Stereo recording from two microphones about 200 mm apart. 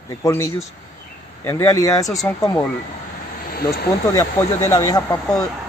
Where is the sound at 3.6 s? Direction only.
15° left (ahead or behind).